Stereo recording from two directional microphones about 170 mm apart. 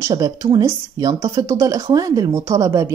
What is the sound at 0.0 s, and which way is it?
A woman's voice, 20° right (ahead or behind).